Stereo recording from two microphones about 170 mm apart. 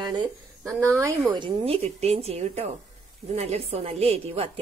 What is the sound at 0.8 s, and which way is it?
Speech, 15° right (ahead or behind).